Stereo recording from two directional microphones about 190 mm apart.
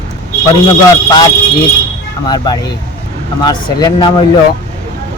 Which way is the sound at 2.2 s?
20° left (ahead or behind).